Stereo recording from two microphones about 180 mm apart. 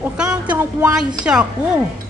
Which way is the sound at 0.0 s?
5° right (ahead or behind).